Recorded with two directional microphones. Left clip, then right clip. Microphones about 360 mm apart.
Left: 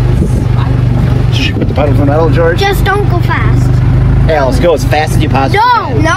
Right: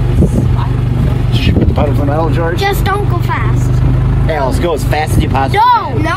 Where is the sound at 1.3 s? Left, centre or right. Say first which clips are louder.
Left 1 dB; right.